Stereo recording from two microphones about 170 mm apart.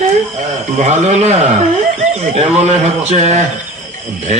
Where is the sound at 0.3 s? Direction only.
45° right (ahead or behind).